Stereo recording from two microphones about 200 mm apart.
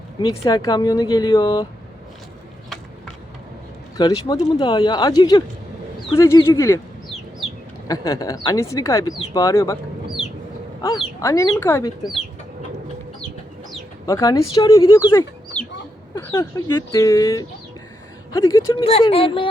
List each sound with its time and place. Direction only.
0.2 s speech: 20° left (ahead or behind)
3.9 s a woman's voice: 20° left (ahead or behind)
7.9 s a woman's voice: 15° left (ahead or behind)
10.8 s a woman's voice: 20° left (ahead or behind)
14.1 s a woman's voice: 15° left (ahead or behind)
15.6 s chicken: 5° left (ahead or behind)
16.1 s a woman's voice: 15° left (ahead or behind)
18.8 s speech: 30° left (ahead or behind)